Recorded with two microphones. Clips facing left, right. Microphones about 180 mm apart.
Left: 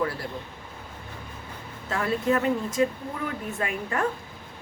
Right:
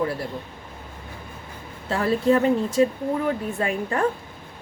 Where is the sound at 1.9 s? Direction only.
30° right (ahead or behind).